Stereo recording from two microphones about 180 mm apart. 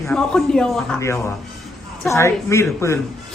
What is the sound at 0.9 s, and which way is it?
A man's voice, 15° left (ahead or behind).